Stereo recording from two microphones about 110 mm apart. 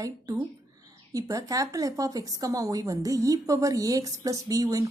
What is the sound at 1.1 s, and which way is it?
A woman's voice, 35° right (ahead or behind).